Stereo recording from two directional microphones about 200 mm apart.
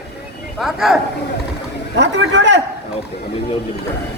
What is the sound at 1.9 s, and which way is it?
Speech, 65° right (ahead or behind).